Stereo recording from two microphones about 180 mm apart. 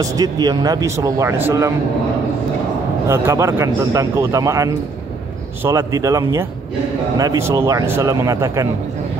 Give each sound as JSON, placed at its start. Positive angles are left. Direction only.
{"t": 0.0, "sound": "speech", "side_deg": -20}
{"t": 3.1, "sound": "speech", "side_deg": -15}